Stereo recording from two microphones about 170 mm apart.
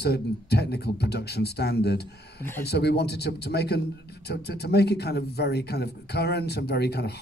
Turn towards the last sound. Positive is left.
turn(degrees=75)  # may be behind; listen again after turning